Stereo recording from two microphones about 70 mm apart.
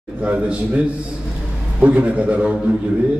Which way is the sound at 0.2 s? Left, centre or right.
Centre.